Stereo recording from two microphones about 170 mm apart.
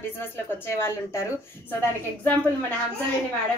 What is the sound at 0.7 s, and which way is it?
Speech, 15° left (ahead or behind).